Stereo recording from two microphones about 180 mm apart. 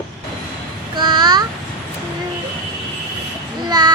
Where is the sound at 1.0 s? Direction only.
25° right (ahead or behind).